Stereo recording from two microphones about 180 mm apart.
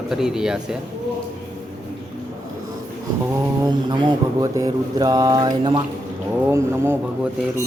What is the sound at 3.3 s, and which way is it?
Speech, 25° right (ahead or behind).